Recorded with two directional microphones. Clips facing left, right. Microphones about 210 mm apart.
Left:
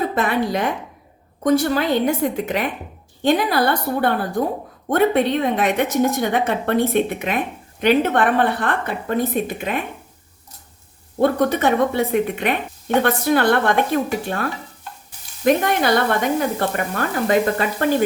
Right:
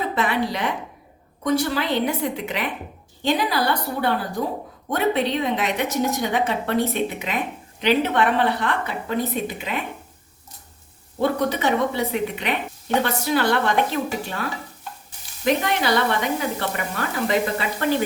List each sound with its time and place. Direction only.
0.1 s a woman's voice: 45° left (ahead or behind)
11.2 s a woman's voice: 50° left (ahead or behind)